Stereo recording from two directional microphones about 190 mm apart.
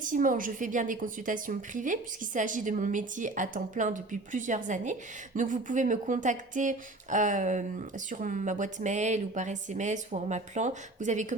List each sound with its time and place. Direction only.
0.0 s a woman's voice: 45° right (ahead or behind)